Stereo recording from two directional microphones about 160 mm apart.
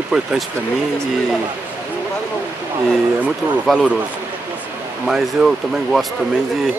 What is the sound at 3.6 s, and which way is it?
Speech, centre (ahead or behind).